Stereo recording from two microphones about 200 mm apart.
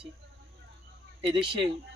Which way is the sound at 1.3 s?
25° right (ahead or behind).